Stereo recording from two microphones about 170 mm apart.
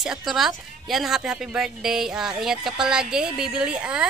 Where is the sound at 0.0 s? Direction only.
Centre (ahead or behind).